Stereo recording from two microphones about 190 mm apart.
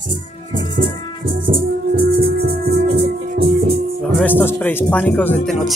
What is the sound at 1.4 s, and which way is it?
Music, 50° right (ahead or behind).